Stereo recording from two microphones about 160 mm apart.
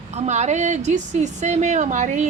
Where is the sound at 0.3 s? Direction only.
45° right (ahead or behind).